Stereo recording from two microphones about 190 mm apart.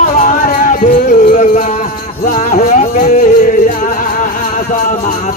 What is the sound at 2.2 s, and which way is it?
Music, 40° left (ahead or behind).